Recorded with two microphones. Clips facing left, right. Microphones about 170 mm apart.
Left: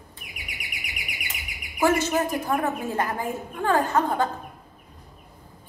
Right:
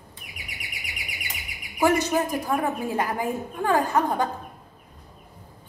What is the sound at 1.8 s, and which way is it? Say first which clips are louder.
A woman's voice: even; 15° right (ahead or behind).